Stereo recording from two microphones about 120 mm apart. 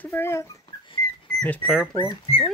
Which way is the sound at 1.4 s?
10° left (ahead or behind).